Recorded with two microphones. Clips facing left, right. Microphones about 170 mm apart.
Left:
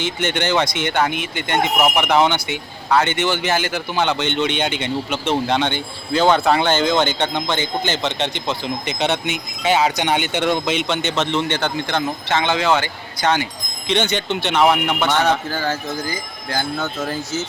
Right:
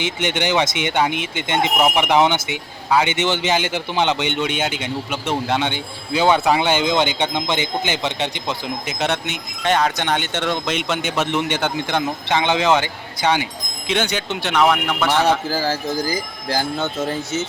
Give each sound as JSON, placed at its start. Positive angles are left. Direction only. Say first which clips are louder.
{"t": 0.0, "sound": "speech", "louder": "even", "side_deg": -15}
{"t": 15.4, "sound": "speech", "louder": "right 2 dB", "side_deg": -30}